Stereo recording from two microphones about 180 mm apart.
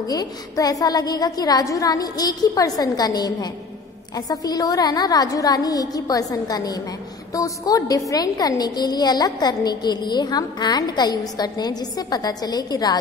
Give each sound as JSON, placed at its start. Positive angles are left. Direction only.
{"t": 0.0, "sound": "a woman's voice", "side_deg": 20}